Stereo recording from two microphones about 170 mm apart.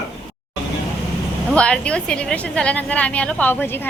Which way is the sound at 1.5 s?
5° left (ahead or behind).